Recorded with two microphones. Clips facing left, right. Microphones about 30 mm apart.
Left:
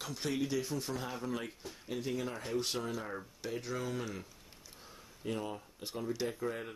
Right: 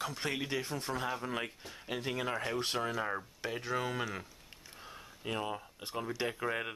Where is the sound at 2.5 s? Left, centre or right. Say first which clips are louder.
Right 1 dB; right.